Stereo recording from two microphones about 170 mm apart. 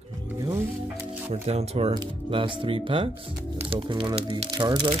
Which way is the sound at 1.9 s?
25° right (ahead or behind).